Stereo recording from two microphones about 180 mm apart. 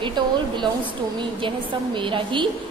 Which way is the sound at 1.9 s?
25° right (ahead or behind).